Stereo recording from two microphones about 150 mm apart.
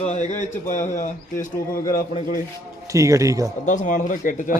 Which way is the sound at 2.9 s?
20° right (ahead or behind).